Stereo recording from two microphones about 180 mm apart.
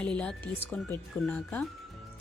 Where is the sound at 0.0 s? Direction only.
5° left (ahead or behind).